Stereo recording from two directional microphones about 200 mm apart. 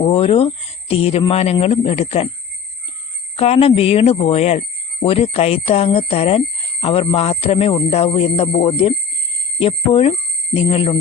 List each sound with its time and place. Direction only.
0.0 s speech: 30° left (ahead or behind)
3.3 s speech: 30° left (ahead or behind)